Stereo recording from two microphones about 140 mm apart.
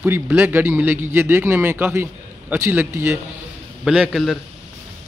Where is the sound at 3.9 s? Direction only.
5° right (ahead or behind).